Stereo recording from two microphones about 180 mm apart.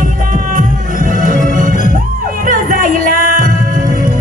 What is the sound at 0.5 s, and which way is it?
Music, 50° right (ahead or behind).